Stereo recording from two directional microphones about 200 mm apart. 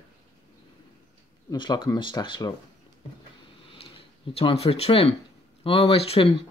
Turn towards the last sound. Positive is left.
turn(degrees=30)  # may be behind; listen again after turning